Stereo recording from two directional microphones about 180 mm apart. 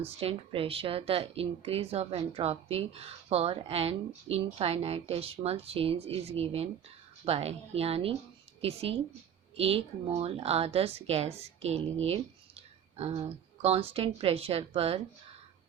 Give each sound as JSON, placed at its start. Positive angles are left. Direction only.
{"t": 0.2, "sound": "speech", "side_deg": -30}